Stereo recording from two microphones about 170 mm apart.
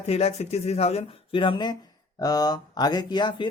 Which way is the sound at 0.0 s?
40° left (ahead or behind).